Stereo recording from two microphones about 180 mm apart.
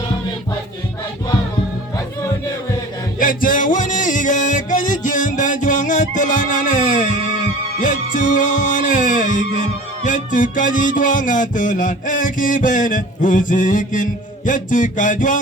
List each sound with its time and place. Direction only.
3.2 s music: 50° left (ahead or behind)